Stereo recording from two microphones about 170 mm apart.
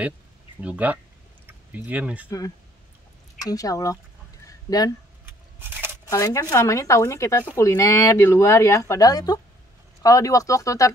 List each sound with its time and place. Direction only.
0.6 s speech: 10° right (ahead or behind)
2.2 s speech: 20° left (ahead or behind)
4.5 s fowl: 20° left (ahead or behind)
5.2 s keys jangling: 10° right (ahead or behind)
6.0 s speech: 20° left (ahead or behind)